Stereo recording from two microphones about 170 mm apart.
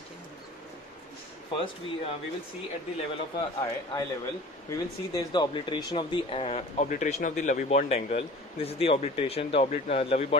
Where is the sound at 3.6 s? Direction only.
20° left (ahead or behind).